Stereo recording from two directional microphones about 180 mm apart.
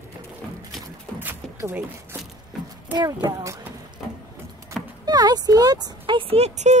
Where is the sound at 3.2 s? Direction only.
20° right (ahead or behind).